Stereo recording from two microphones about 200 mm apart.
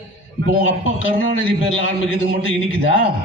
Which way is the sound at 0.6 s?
75° left (ahead or behind).